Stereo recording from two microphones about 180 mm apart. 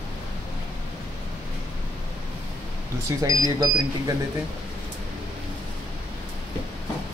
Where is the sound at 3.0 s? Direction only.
20° right (ahead or behind).